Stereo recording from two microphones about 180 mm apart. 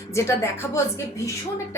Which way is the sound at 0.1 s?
15° left (ahead or behind).